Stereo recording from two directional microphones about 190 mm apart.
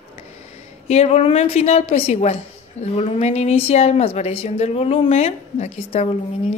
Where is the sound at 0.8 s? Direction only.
35° left (ahead or behind).